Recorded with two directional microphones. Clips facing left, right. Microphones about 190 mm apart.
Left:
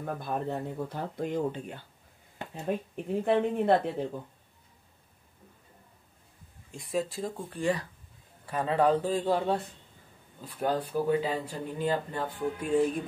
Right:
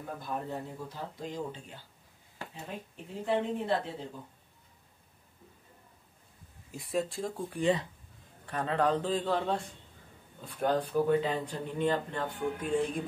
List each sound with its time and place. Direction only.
0.0 s speech: 60° left (ahead or behind)
2.4 s a sound: 20° left (ahead or behind)
3.1 s speech: 60° left (ahead or behind)
6.7 s speech: centre (ahead or behind)
7.4 s speech: 20° right (ahead or behind)
8.5 s speech: 10° left (ahead or behind)